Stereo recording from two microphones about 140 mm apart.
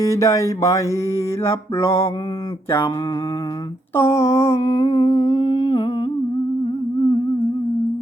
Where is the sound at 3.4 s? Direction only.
30° left (ahead or behind).